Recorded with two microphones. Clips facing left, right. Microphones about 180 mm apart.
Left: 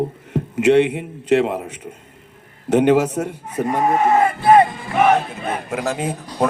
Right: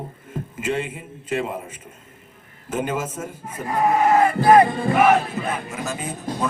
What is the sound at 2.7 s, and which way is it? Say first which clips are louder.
Speech: left 11 dB; 70° left (ahead or behind).